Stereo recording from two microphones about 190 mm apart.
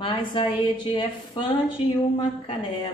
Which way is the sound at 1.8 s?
30° left (ahead or behind).